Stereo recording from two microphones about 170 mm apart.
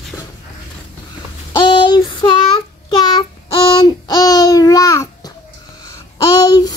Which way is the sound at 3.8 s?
25° left (ahead or behind).